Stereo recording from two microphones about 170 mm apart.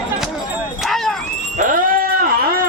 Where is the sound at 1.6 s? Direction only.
50° right (ahead or behind).